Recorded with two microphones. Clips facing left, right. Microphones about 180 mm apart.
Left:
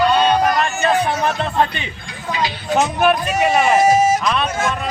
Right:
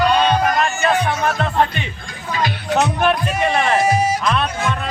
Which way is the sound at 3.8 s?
45° left (ahead or behind).